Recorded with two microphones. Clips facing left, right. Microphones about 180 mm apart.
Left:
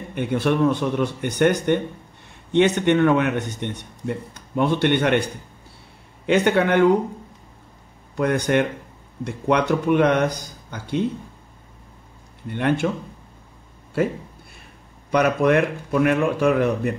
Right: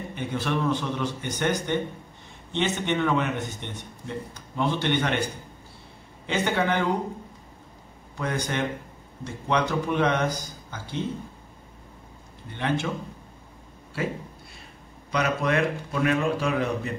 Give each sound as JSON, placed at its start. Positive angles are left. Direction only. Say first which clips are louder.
{"t": 0.1, "sound": "speech", "louder": "left 8 dB", "side_deg": 60}
{"t": 8.2, "sound": "speech", "louder": "left 8 dB", "side_deg": 60}
{"t": 12.4, "sound": "speech", "louder": "left 6 dB", "side_deg": 60}
{"t": 15.0, "sound": "speech", "louder": "left 7 dB", "side_deg": 55}